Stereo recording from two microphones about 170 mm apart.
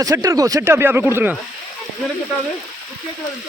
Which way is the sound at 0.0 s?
20° right (ahead or behind).